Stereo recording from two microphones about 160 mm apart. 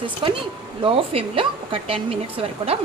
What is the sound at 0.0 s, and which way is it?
A woman's voice, 30° right (ahead or behind).